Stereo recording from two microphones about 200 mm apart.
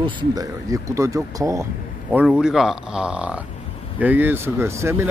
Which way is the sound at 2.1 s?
5° right (ahead or behind).